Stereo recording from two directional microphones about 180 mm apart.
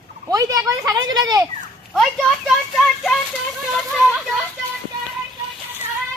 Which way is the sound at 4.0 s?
Centre (ahead or behind).